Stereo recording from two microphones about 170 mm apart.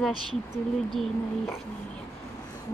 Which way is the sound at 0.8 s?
Centre (ahead or behind).